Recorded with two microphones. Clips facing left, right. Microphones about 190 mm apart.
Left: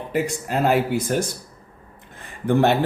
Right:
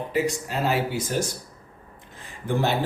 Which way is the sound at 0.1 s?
55° left (ahead or behind).